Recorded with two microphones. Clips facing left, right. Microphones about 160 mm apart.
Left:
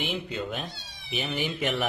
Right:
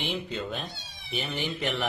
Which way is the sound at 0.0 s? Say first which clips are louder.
Left 1 dB; centre (ahead or behind).